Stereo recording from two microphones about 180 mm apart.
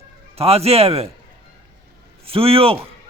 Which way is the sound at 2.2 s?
30° right (ahead or behind).